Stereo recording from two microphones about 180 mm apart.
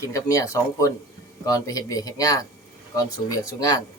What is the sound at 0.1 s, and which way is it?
Speech, 15° left (ahead or behind).